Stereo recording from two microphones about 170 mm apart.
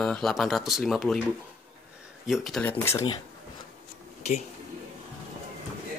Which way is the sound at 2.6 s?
15° left (ahead or behind).